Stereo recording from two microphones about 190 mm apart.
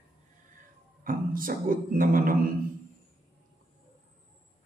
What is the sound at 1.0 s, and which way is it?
Music, 45° right (ahead or behind).